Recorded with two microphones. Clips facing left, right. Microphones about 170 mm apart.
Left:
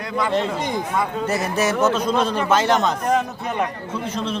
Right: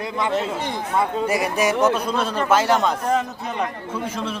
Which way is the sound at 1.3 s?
10° right (ahead or behind).